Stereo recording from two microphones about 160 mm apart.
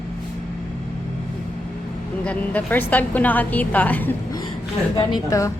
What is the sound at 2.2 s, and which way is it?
A woman's voice, 10° left (ahead or behind).